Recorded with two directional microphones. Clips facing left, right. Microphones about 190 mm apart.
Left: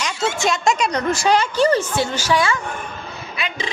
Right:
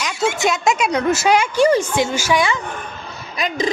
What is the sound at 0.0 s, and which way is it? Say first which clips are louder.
A woman's voice: right 2 dB; 10° right (ahead or behind).